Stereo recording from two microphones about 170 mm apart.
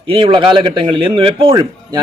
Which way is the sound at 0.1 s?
30° right (ahead or behind).